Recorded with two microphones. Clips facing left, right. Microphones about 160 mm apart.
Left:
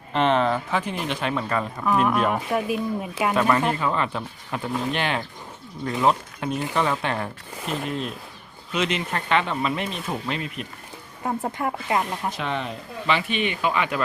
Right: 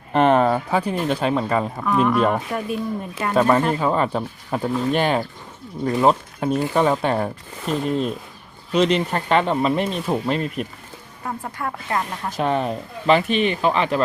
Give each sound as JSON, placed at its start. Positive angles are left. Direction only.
{"t": 0.1, "sound": "speech", "side_deg": -50}
{"t": 1.3, "sound": "speech", "side_deg": -30}
{"t": 1.8, "sound": "speech", "side_deg": 5}
{"t": 3.8, "sound": "speech", "side_deg": -40}
{"t": 5.8, "sound": "speech", "side_deg": -30}
{"t": 11.3, "sound": "speech", "side_deg": 25}
{"t": 12.4, "sound": "speech", "side_deg": -45}